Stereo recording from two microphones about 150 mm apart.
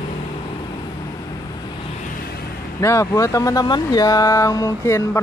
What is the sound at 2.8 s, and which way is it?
Speech, 20° left (ahead or behind).